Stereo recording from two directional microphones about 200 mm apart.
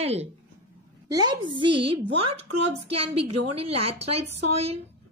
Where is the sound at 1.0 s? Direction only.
20° right (ahead or behind).